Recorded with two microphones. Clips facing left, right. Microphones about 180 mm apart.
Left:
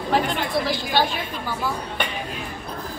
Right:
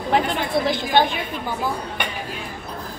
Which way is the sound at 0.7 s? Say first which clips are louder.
Right 3 dB; 20° right (ahead or behind).